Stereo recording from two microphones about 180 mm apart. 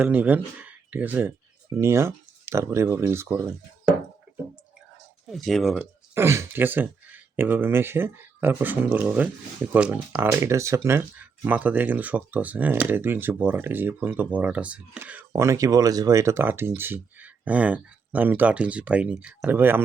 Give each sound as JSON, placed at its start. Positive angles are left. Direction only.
{"t": 0.0, "sound": "speech", "side_deg": -10}
{"t": 4.3, "sound": "a sound", "side_deg": -70}
{"t": 5.3, "sound": "speech", "side_deg": 0}
{"t": 5.8, "sound": "speech", "side_deg": -15}